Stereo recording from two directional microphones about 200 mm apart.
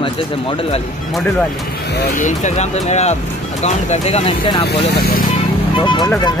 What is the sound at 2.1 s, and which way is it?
Speech, 40° left (ahead or behind).